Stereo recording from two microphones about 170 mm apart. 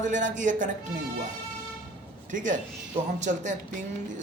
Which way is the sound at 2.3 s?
50° right (ahead or behind).